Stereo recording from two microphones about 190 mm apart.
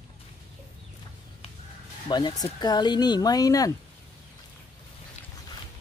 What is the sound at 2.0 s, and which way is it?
Speech, 20° left (ahead or behind).